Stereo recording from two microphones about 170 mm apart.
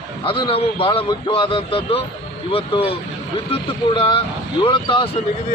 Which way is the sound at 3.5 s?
30° left (ahead or behind).